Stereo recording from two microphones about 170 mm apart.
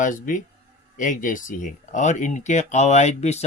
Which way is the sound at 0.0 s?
50° left (ahead or behind).